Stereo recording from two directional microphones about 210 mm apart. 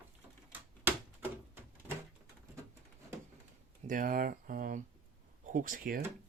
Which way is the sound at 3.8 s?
40° right (ahead or behind).